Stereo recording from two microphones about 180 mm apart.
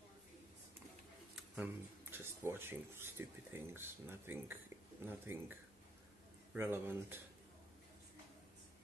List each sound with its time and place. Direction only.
1.3 s speech: 5° right (ahead or behind)